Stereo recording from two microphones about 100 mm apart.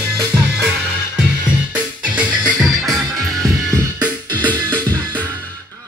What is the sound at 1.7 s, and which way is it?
Music, 15° right (ahead or behind).